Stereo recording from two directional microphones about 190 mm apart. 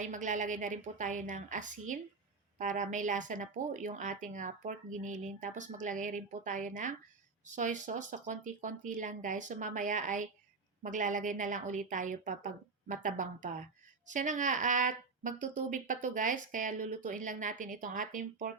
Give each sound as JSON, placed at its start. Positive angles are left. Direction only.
{"t": 0.0, "sound": "a woman's voice", "side_deg": -40}